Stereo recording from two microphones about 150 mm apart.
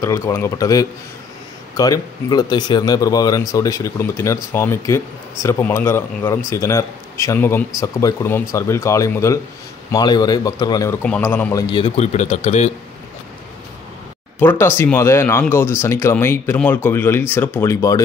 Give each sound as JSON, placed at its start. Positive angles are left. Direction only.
{"t": 0.0, "sound": "speech", "side_deg": 20}
{"t": 10.9, "sound": "speech", "side_deg": 10}
{"t": 11.5, "sound": "a man's voice", "side_deg": 30}
{"t": 12.0, "sound": "speech", "side_deg": 45}
{"t": 14.4, "sound": "speech", "side_deg": 15}